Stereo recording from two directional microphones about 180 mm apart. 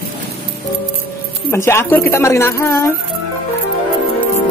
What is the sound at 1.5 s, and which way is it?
A woman's voice, 15° left (ahead or behind).